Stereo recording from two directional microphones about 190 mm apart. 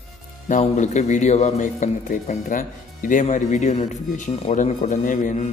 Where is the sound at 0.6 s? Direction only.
40° left (ahead or behind).